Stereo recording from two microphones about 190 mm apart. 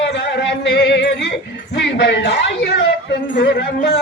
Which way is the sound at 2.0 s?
65° left (ahead or behind).